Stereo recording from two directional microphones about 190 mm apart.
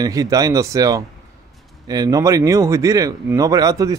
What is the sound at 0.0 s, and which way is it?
A man's voice, 20° right (ahead or behind).